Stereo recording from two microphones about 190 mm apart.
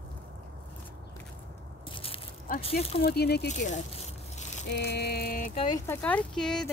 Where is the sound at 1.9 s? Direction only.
30° left (ahead or behind).